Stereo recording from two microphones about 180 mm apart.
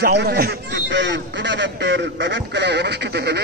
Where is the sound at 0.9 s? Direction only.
80° right.